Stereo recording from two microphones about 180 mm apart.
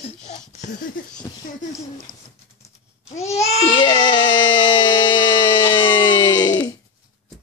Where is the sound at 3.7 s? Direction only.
25° left (ahead or behind).